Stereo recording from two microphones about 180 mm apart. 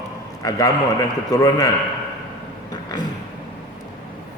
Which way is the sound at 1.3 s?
20° left (ahead or behind).